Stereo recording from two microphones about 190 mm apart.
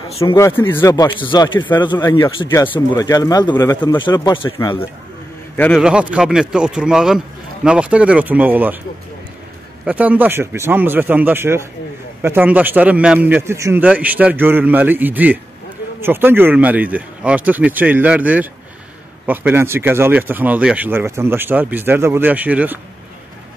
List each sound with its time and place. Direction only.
0.3 s speech: 15° left (ahead or behind)
5.8 s speech: 5° right (ahead or behind)
9.8 s speech: 10° right (ahead or behind)